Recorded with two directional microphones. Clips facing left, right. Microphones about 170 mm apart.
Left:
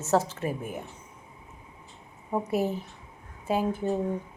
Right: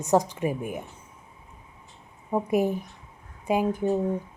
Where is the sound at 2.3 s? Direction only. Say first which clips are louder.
Right 3 dB; 15° right (ahead or behind).